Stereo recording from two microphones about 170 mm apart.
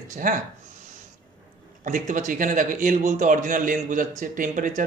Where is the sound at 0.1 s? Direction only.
50° right (ahead or behind).